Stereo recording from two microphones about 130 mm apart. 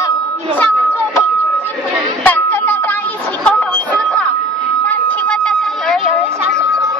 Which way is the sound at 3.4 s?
10° left (ahead or behind).